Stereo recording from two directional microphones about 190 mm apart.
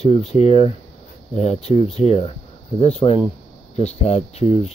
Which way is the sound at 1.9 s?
30° left (ahead or behind).